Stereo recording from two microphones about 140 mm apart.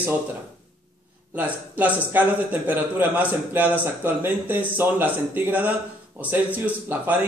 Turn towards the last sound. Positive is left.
turn(degrees=-10)  # may be behind; listen again after turning